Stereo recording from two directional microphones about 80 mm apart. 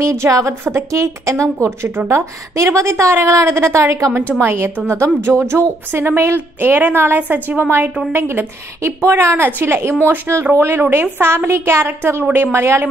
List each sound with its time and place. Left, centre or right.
0.0 s a woman's voice: right